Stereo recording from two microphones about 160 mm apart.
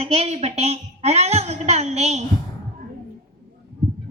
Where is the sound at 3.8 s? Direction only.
45° right (ahead or behind).